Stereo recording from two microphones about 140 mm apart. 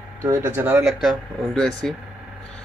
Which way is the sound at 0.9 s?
Centre (ahead or behind).